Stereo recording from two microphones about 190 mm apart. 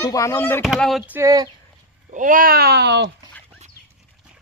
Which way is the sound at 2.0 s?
45° right (ahead or behind).